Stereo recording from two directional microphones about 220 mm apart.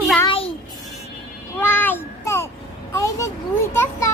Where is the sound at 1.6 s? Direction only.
10° left (ahead or behind).